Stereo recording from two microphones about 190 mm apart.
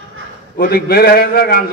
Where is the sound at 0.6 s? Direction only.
55° left (ahead or behind).